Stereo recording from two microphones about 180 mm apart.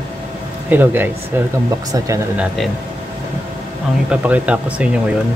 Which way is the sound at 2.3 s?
5° right (ahead or behind).